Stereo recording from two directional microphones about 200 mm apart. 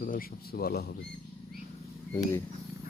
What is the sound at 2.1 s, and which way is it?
Speech, 15° left (ahead or behind).